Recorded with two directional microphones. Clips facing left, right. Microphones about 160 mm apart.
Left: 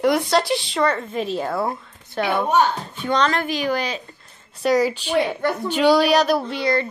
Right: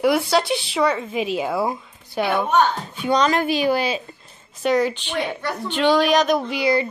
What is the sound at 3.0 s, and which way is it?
A woman's voice, 15° right (ahead or behind).